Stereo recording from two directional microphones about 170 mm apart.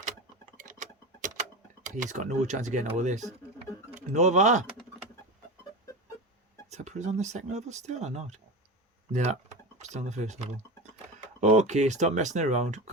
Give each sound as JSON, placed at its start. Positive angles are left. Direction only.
{"t": 0.5, "sound": "a sound", "side_deg": -50}
{"t": 2.0, "sound": "speech", "side_deg": -45}
{"t": 6.7, "sound": "speech", "side_deg": -45}